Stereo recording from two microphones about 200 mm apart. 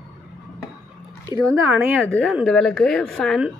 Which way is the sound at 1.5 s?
10° right (ahead or behind).